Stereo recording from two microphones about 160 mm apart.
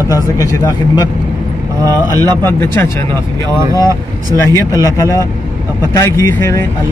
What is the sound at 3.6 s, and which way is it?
Speech, 20° right (ahead or behind).